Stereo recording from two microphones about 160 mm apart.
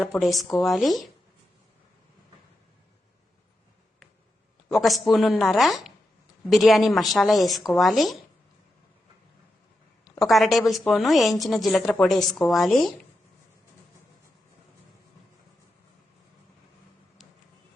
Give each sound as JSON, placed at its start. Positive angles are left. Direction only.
{"t": 0.0, "sound": "a woman's voice", "side_deg": 0}
{"t": 4.7, "sound": "a woman's voice", "side_deg": 0}
{"t": 10.0, "sound": "a woman's voice", "side_deg": 0}